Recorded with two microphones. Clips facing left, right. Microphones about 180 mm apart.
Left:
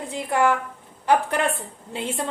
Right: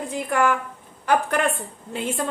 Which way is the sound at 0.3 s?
25° left (ahead or behind).